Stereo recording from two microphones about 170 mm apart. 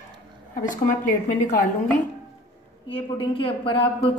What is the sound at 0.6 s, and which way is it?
Speech, 50° left (ahead or behind).